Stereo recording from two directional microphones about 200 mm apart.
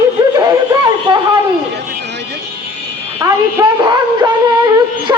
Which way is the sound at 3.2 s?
15° right (ahead or behind).